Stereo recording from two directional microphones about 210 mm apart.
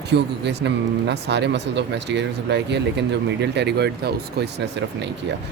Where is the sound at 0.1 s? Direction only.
55° right (ahead or behind).